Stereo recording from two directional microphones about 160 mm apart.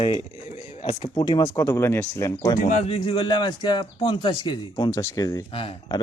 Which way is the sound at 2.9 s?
30° left (ahead or behind).